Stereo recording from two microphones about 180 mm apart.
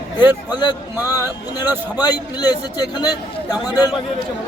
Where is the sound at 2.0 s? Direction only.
20° left (ahead or behind).